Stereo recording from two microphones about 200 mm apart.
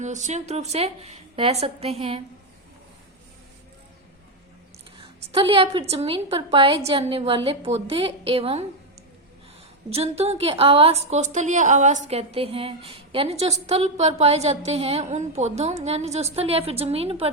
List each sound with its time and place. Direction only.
0.0 s a woman's voice: 35° right (ahead or behind)
4.9 s a woman's voice: 30° right (ahead or behind)
9.9 s a woman's voice: 30° right (ahead or behind)